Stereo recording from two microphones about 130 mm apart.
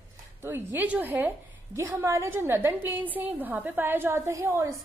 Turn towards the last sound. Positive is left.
turn(degrees=-20)  # may be behind; listen again after turning